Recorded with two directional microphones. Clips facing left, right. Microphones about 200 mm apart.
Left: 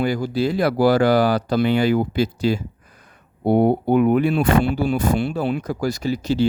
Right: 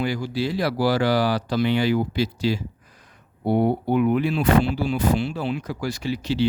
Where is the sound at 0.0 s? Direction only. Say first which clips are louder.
Left 4 dB; 45° left (ahead or behind).